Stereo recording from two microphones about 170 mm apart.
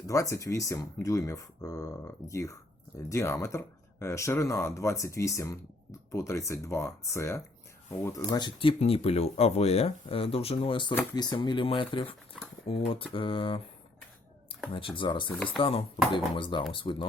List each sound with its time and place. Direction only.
0.1 s speech: 20° left (ahead or behind)
14.7 s speech: 30° left (ahead or behind)